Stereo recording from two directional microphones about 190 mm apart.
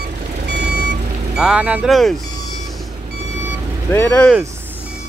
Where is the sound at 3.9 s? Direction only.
10° left (ahead or behind).